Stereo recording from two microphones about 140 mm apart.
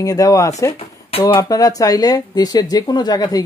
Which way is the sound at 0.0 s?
25° left (ahead or behind).